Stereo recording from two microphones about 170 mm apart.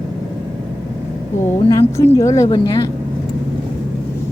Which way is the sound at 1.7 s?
20° left (ahead or behind).